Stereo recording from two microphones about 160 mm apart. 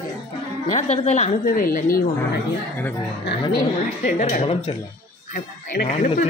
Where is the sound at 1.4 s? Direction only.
60° left (ahead or behind).